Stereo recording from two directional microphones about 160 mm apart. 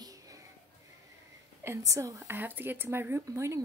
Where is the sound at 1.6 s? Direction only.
20° right (ahead or behind).